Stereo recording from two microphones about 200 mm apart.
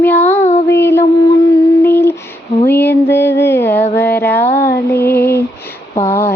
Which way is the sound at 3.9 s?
10° left (ahead or behind).